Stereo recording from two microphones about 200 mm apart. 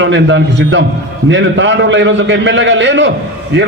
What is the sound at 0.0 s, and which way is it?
A man's voice, 65° right (ahead or behind).